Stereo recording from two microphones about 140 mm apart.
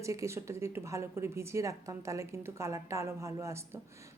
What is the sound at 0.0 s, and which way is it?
Speech, 20° right (ahead or behind).